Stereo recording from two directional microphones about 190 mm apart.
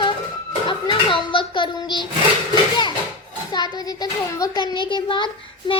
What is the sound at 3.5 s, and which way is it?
A child's voice, 20° left (ahead or behind).